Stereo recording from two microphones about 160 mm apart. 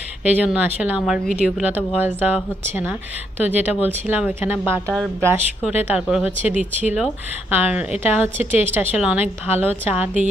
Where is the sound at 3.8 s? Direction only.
10° right (ahead or behind).